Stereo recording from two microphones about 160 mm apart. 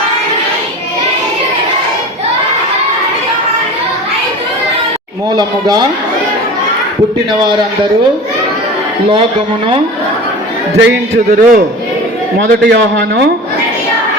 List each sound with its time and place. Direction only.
5.4 s speech: 25° right (ahead or behind)
10.8 s a man's voice: 80° right
12.5 s a man's voice: 90° right